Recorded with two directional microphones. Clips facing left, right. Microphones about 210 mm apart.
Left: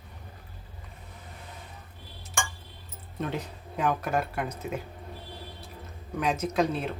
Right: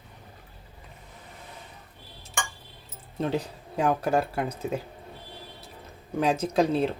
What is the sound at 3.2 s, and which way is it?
Speech, 30° right (ahead or behind).